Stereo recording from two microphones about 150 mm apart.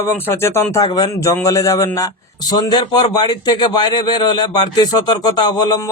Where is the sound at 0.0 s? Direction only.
15° left (ahead or behind).